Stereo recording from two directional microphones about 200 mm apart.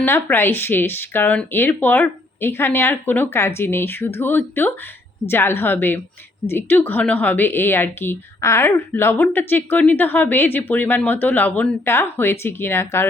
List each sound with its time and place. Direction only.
0.0 s a woman's voice: 10° left (ahead or behind)